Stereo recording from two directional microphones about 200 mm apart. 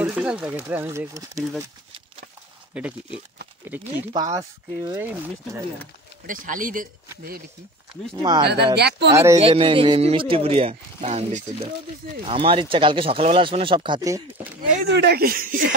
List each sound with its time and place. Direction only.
0.0 s speech: 5° right (ahead or behind)
2.7 s speech: 5° right (ahead or behind)
6.2 s speech: 45° right (ahead or behind)
8.2 s speech: 20° right (ahead or behind)
8.7 s speech: 55° right (ahead or behind)
9.1 s speech: 15° right (ahead or behind)
9.4 s speech: 30° right (ahead or behind)
14.9 s speech: 55° right (ahead or behind)